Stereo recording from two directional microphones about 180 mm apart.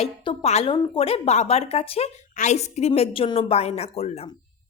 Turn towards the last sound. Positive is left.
turn(degrees=35)  # may be behind; listen again after turning